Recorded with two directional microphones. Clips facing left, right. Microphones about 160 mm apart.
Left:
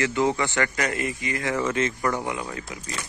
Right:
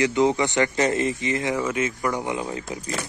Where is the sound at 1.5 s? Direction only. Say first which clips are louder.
Even; 10° right (ahead or behind).